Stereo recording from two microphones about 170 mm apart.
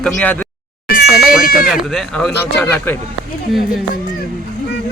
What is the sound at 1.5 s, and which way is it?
Speech, centre (ahead or behind).